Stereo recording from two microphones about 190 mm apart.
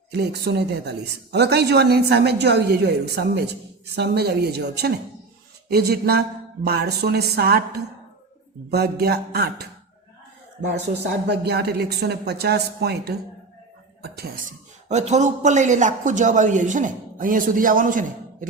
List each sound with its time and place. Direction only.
0.1 s a woman's voice: 60° right (ahead or behind)
8.7 s a woman's voice: 55° right (ahead or behind)
10.7 s a woman's voice: 60° right (ahead or behind)
14.8 s a man's voice: 35° right (ahead or behind)